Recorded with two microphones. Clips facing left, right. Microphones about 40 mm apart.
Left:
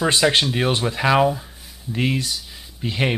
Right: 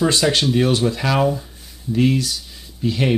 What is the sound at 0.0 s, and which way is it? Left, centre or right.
Speech, centre.